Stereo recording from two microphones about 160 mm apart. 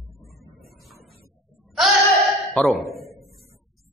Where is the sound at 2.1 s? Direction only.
Centre (ahead or behind).